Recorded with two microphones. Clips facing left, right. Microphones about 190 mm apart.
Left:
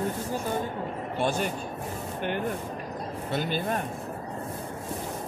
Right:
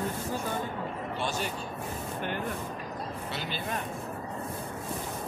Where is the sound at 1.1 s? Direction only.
55° left (ahead or behind).